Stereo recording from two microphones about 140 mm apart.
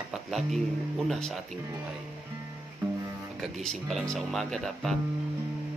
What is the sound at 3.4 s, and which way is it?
Speech, centre (ahead or behind).